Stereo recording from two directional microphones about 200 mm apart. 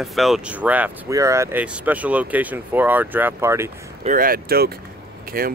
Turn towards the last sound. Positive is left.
turn(degrees=-45)  # may be behind; listen again after turning